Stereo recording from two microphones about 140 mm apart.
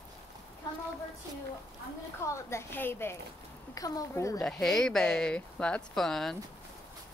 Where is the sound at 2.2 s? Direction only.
20° left (ahead or behind).